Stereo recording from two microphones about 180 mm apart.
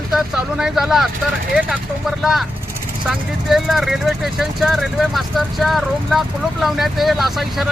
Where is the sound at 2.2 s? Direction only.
Centre (ahead or behind).